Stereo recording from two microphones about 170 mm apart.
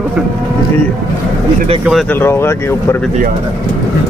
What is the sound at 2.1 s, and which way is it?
Speech, 15° left (ahead or behind).